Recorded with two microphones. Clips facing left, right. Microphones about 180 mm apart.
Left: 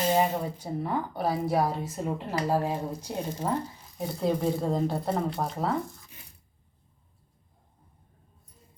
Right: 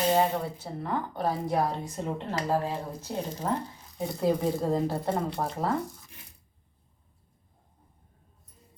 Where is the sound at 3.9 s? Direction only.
Centre (ahead or behind).